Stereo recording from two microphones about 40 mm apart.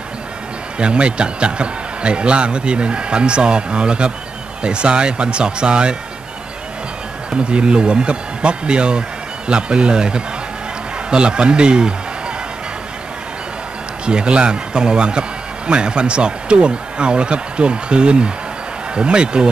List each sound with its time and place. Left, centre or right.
0.7 s a man's voice: right
7.2 s a man's voice: right
14.0 s a man's voice: right